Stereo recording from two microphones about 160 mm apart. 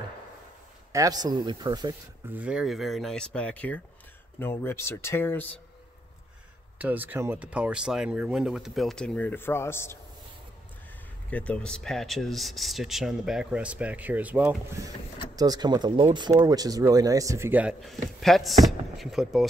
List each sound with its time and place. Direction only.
0.9 s speech: 25° right (ahead or behind)
2.2 s speech: 10° right (ahead or behind); by 5.5 s 15° left (ahead or behind)
6.8 s speech: 10° right (ahead or behind); by 9.9 s 15° left (ahead or behind)
11.2 s speech: 10° left (ahead or behind); by 14.6 s 10° right (ahead or behind)
15.3 s speech: 25° right (ahead or behind)
17.8 s speech: centre (ahead or behind)